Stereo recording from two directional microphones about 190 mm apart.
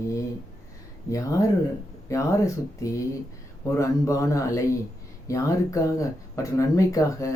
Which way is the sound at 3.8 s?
15° left (ahead or behind).